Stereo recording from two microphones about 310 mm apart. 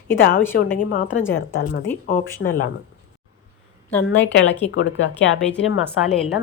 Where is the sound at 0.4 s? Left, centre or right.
Centre.